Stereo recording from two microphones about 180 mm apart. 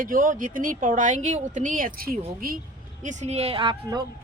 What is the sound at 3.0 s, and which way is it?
Speech, 40° right (ahead or behind).